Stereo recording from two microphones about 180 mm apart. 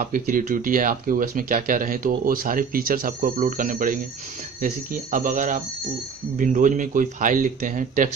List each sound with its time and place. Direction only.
0.0 s speech: 50° right (ahead or behind)